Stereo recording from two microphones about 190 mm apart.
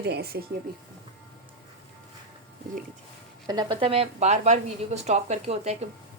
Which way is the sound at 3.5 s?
25° right (ahead or behind).